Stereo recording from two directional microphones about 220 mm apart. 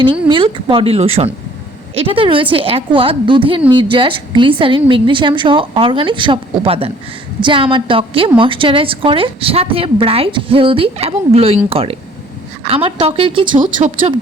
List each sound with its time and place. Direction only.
0.0 s a woman's voice: 25° right (ahead or behind)
13.6 s speech: 35° right (ahead or behind)